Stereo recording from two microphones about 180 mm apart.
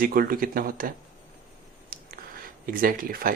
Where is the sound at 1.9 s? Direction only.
50° right (ahead or behind).